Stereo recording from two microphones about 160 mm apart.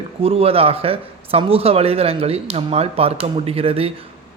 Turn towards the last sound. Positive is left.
turn(degrees=-35)  # may be behind; listen again after turning